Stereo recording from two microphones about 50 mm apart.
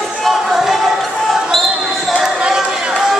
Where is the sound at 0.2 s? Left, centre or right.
Centre.